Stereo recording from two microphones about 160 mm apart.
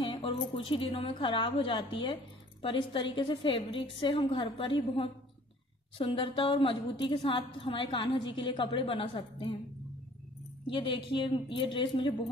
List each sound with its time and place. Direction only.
0.0 s a woman's voice: 35° left (ahead or behind)
10.7 s a woman's voice: 30° left (ahead or behind)